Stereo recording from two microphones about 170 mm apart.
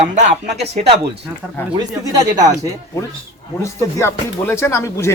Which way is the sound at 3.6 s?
15° left (ahead or behind).